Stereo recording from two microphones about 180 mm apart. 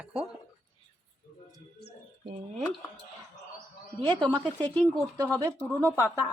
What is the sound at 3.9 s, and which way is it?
Speech, 25° right (ahead or behind).